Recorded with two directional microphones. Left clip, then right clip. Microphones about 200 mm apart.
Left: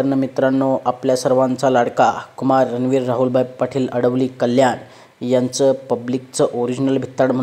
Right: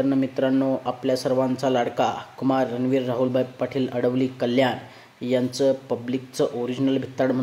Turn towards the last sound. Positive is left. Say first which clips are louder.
# left 6 dB
turn(degrees=20)  # may be behind; listen again after turning